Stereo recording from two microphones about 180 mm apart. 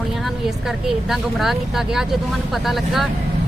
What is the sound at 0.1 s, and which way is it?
Speech, centre (ahead or behind).